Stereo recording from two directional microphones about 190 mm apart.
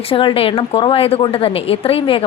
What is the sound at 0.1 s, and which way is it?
A woman's voice, 30° left (ahead or behind).